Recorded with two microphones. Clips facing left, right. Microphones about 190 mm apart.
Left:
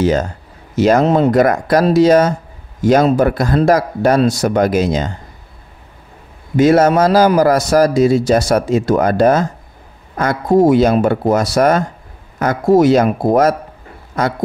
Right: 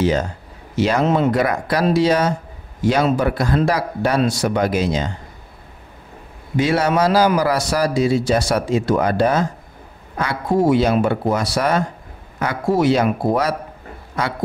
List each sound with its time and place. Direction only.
0.0 s a man's voice: 45° left (ahead or behind)
6.5 s a man's voice: 45° left (ahead or behind)